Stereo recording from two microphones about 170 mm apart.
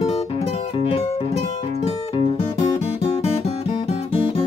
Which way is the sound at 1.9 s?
35° left (ahead or behind).